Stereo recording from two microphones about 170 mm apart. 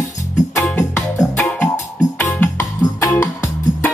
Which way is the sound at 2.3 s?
15° left (ahead or behind).